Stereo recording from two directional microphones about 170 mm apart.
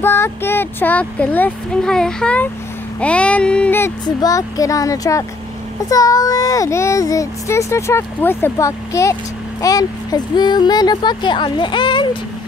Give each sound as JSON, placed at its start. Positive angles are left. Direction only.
{"t": 0.0, "sound": "speech", "side_deg": 15}
{"t": 4.0, "sound": "a child's voice", "side_deg": 20}